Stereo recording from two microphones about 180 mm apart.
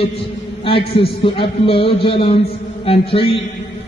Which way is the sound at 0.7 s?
30° left (ahead or behind).